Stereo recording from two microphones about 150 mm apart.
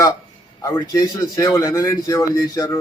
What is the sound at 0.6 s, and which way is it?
A man's voice, 20° left (ahead or behind).